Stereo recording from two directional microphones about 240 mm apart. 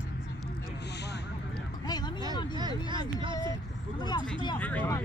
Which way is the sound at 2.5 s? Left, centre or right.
Centre.